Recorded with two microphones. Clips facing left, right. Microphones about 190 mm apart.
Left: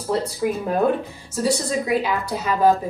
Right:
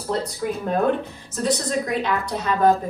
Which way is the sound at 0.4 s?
5° left (ahead or behind).